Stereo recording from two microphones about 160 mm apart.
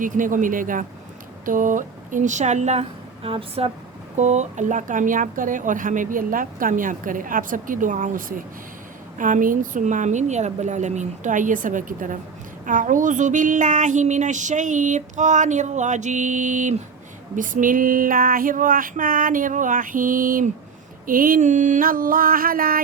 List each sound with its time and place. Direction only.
0.0 s speech: 55° right (ahead or behind)
1.5 s child singing: 55° right (ahead or behind)
3.2 s speech: 35° right (ahead or behind); by 8.4 s 55° right (ahead or behind)
9.1 s child singing: 55° right (ahead or behind)
17.3 s speech: 55° right (ahead or behind)